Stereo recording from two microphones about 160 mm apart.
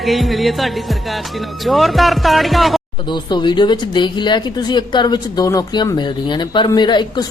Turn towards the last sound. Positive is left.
turn(degrees=25)  # may be behind; listen again after turning